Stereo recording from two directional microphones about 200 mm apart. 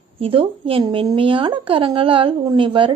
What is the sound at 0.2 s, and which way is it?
Speech, 25° right (ahead or behind).